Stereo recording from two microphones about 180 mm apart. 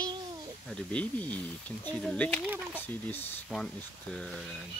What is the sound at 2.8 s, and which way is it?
Speech, 10° left (ahead or behind).